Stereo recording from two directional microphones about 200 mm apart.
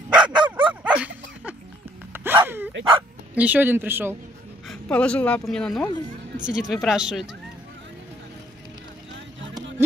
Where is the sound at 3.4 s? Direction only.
10° right (ahead or behind).